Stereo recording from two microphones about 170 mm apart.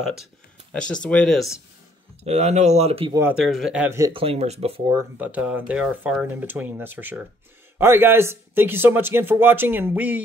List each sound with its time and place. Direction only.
0.7 s speech: 5° left (ahead or behind)
2.2 s speech: 40° right (ahead or behind)
3.1 s speech: 15° right (ahead or behind)
3.3 s speech: centre (ahead or behind)
4.1 s speech: 35° right (ahead or behind)
4.9 s speech: 10° right (ahead or behind)